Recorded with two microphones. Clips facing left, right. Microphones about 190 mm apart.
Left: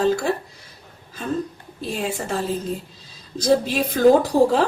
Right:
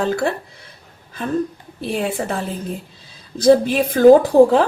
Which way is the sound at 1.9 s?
60° right (ahead or behind).